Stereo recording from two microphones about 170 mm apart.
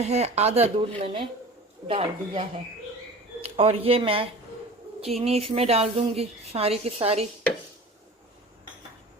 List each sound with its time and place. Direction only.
0.0 s speech: 40° right (ahead or behind)